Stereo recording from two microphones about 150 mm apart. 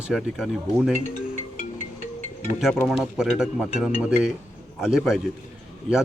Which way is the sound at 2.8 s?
5° right (ahead or behind).